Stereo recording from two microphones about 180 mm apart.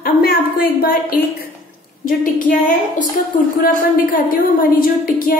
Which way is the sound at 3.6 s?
50° left (ahead or behind).